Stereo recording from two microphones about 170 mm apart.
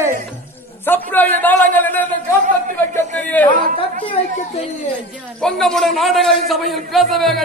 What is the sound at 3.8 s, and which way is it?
Speech, 35° left (ahead or behind).